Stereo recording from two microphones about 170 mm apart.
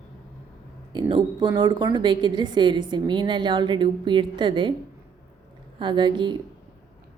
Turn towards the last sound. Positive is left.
turn(degrees=-25)  # may be behind; listen again after turning